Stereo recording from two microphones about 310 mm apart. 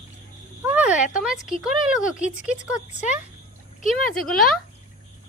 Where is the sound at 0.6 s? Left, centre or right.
Centre.